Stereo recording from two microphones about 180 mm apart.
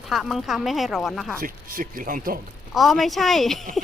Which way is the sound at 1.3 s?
50° right (ahead or behind).